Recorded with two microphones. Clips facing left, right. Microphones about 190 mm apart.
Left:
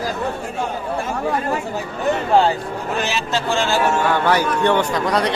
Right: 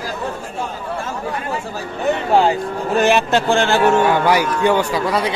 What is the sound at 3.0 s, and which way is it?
Speech, 55° right (ahead or behind).